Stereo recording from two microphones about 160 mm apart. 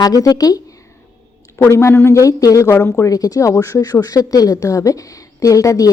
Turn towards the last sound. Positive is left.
turn(degrees=20)  # may be behind; listen again after turning